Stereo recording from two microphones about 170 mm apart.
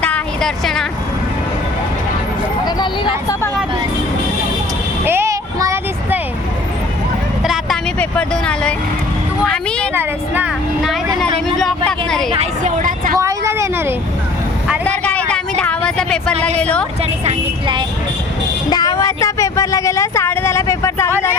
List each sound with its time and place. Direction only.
0.0 s a sound: 5° left (ahead or behind)
2.6 s speech: 25° left (ahead or behind)
5.0 s a sound: 15° right (ahead or behind)
7.4 s vehicle: centre (ahead or behind)
7.9 s speech: 5° left (ahead or behind)
9.4 s a sound: 5° left (ahead or behind)
9.9 s speech: 10° right (ahead or behind)
11.4 s vehicle: centre (ahead or behind)
12.3 s a woman's voice: 35° right (ahead or behind)
13.1 s vehicle: 15° right (ahead or behind)
14.8 s vehicle: 10° left (ahead or behind)
16.6 s a woman's voice: 5° left (ahead or behind)
18.7 s speech: 20° left (ahead or behind)